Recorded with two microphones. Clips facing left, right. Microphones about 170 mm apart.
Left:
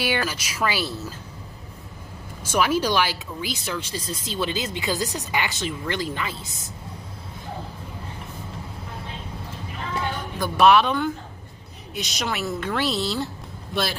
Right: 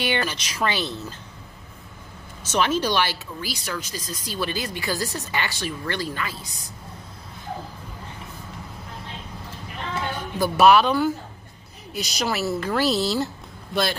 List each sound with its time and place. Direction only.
0.0 s speech: 5° left (ahead or behind)
2.4 s speech: 10° left (ahead or behind)
3.6 s speech: 25° left (ahead or behind)
10.4 s a woman's voice: 5° right (ahead or behind)